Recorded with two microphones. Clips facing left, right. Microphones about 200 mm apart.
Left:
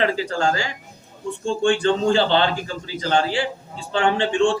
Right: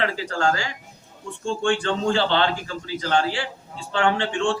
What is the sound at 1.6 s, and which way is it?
A man's voice, 20° left (ahead or behind).